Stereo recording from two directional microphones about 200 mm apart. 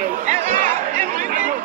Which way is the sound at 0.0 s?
40° right (ahead or behind).